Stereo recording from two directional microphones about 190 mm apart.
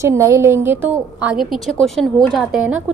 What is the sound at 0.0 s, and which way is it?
A woman's voice, 15° right (ahead or behind).